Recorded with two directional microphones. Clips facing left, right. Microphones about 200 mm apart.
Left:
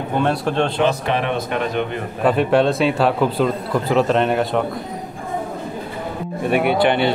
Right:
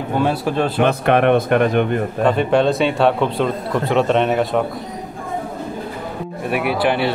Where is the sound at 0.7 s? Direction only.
55° right (ahead or behind).